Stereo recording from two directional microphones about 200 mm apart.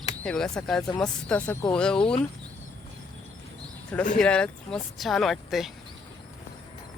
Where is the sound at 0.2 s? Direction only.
5° left (ahead or behind).